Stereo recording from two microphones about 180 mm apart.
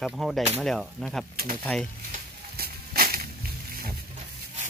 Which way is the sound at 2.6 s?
55° right (ahead or behind).